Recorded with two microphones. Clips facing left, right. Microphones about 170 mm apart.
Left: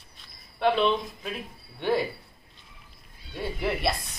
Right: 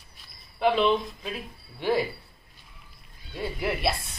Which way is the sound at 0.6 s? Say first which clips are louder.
Right 1 dB; 5° right (ahead or behind).